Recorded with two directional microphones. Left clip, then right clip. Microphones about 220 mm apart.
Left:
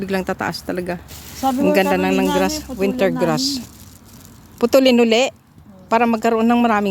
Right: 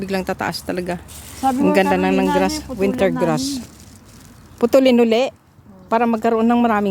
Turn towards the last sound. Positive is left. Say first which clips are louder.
# even
turn(degrees=-5)  # may be behind; listen again after turning